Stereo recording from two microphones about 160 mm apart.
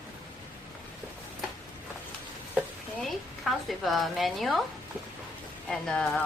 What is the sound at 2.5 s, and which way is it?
Stir, centre (ahead or behind).